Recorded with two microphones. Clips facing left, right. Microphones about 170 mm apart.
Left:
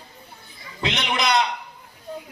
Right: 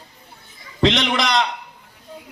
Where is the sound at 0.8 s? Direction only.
90° right.